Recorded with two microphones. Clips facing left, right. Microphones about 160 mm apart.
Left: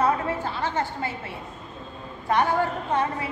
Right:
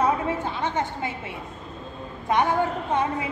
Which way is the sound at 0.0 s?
20° right (ahead or behind).